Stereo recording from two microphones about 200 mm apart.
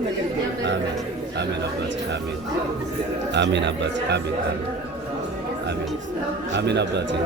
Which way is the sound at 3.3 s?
60° right (ahead or behind).